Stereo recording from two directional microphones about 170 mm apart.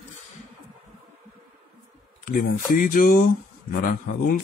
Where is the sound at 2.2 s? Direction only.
55° left (ahead or behind).